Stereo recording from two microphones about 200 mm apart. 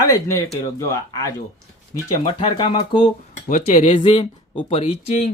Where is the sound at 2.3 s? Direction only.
25° left (ahead or behind).